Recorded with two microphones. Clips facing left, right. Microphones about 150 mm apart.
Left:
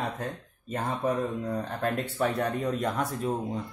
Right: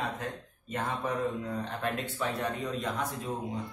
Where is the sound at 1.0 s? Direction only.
50° left (ahead or behind).